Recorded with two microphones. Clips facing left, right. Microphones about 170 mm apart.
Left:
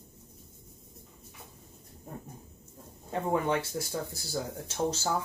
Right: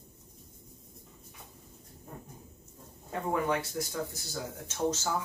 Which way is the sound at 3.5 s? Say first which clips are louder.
Left 1 dB; 30° left (ahead or behind).